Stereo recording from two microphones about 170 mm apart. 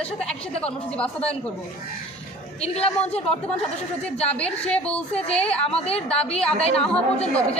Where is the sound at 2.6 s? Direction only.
35° left (ahead or behind).